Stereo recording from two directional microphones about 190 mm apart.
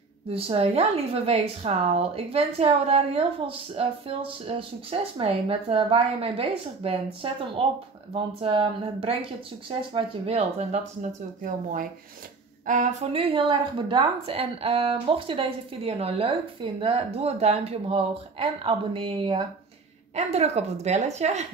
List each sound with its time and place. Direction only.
0.3 s a woman's voice: 30° right (ahead or behind)
12.6 s a woman's voice: 40° right (ahead or behind)